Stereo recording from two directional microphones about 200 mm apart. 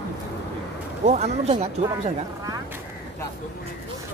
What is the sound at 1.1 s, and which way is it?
Speech, 35° right (ahead or behind).